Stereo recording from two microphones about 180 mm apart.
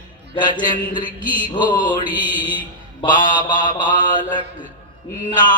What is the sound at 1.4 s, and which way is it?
Mantra, 25° left (ahead or behind).